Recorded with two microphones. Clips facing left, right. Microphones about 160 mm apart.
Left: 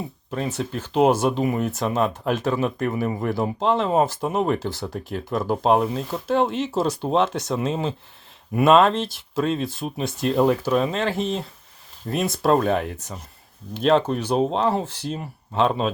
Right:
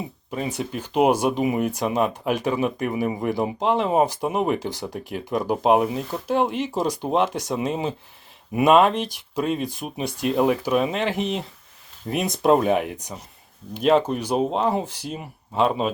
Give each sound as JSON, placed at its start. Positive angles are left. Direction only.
{"t": 0.3, "sound": "speech", "side_deg": -10}